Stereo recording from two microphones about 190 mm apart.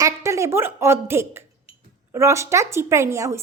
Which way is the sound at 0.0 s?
15° right (ahead or behind).